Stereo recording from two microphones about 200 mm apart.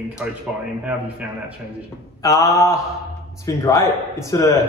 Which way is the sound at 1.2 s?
5° right (ahead or behind).